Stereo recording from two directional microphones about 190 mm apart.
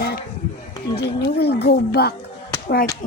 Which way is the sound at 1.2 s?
60° left (ahead or behind).